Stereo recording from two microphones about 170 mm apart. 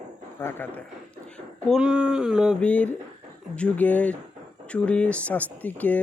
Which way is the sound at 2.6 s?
10° left (ahead or behind).